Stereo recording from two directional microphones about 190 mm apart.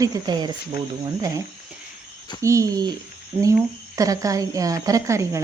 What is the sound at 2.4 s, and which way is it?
Speech, 15° right (ahead or behind).